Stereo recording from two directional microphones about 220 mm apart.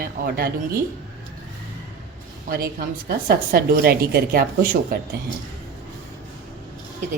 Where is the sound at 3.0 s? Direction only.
45° right (ahead or behind).